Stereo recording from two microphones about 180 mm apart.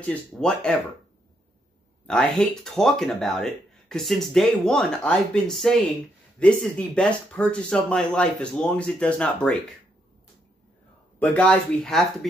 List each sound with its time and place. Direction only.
0.0 s speech: 5° left (ahead or behind)
2.0 s speech: 5° left (ahead or behind)
11.1 s speech: 10° left (ahead or behind)